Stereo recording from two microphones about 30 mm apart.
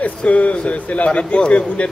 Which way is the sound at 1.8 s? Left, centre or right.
Left.